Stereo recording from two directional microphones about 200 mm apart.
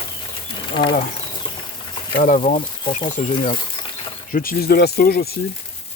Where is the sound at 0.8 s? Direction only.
40° left (ahead or behind).